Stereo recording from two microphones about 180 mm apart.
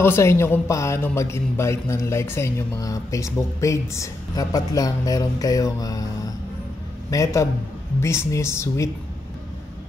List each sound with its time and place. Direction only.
0.0 s a man's voice: 15° left (ahead or behind)